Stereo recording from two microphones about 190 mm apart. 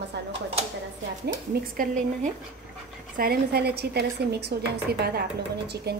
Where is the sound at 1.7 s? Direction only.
45° right (ahead or behind).